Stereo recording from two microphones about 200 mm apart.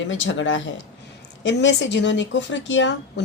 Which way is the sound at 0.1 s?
70° left (ahead or behind).